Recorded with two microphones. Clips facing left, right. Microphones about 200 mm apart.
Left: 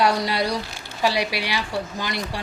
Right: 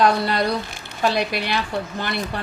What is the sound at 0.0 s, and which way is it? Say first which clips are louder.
A woman's voice: right 2 dB; 10° left (ahead or behind).